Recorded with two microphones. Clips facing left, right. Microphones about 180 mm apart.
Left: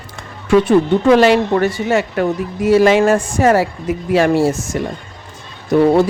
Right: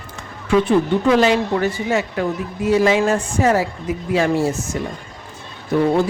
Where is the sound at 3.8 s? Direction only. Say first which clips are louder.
Left 4 dB; 65° left (ahead or behind).